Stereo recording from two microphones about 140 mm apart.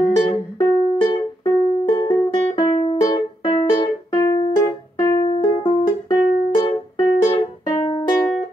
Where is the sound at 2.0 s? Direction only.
35° left (ahead or behind).